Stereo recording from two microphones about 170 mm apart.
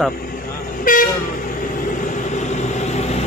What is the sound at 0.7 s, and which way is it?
Vehicle, 55° left (ahead or behind).